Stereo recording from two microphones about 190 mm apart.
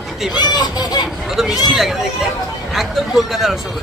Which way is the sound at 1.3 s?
Centre (ahead or behind).